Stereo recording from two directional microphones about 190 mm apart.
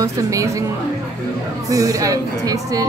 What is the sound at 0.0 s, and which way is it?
Speech, 15° right (ahead or behind).